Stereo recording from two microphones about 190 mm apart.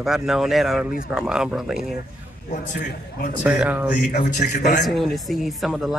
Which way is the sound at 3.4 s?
5° right (ahead or behind).